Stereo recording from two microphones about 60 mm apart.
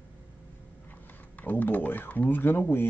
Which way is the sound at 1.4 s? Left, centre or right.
Left.